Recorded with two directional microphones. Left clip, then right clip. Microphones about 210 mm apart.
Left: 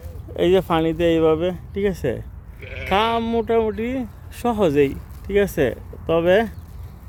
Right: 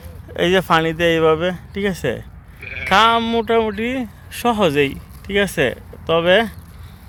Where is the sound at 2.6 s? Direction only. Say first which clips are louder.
Right 6 dB; 60° left (ahead or behind).